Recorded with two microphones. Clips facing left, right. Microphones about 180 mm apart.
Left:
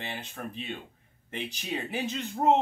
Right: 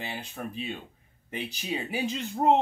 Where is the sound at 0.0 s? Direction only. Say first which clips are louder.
Right 1 dB; 10° right (ahead or behind).